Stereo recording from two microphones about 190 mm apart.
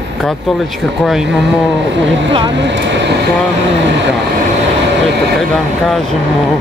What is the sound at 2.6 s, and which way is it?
Speech, 65° right (ahead or behind).